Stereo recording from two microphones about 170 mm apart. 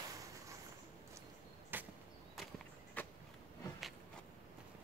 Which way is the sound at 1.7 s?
10° right (ahead or behind).